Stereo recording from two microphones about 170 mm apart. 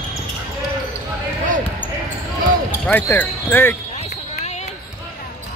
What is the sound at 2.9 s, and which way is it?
Basketball bounce, 10° left (ahead or behind).